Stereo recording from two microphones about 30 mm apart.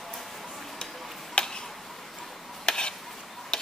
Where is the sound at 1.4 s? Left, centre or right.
Left.